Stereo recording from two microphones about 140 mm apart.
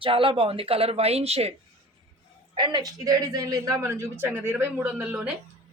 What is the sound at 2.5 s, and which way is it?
Speech, 35° right (ahead or behind).